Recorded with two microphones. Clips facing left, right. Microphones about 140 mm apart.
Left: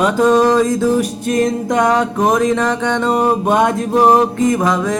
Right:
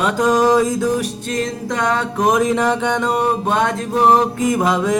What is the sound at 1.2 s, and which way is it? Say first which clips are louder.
Music: left 6 dB; 20° left (ahead or behind).